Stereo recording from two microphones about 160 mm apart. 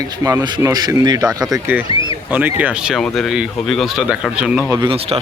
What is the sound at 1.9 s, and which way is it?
Speech, 35° left (ahead or behind).